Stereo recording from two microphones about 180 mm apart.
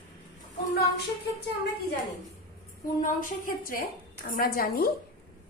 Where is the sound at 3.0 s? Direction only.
50° left (ahead or behind).